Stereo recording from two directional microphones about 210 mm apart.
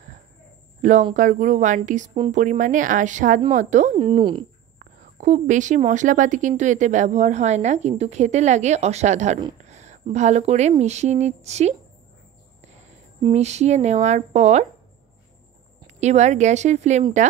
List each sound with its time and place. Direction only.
1.1 s a woman's voice: 35° right (ahead or behind)
4.7 s a woman's voice: 35° right (ahead or behind)
13.2 s a woman's voice: 30° right (ahead or behind)
16.0 s a woman's voice: 35° right (ahead or behind)